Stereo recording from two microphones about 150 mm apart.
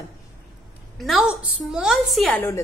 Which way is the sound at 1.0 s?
Centre (ahead or behind).